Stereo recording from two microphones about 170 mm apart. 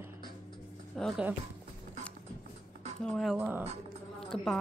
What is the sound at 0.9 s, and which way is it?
Speech, 5° left (ahead or behind).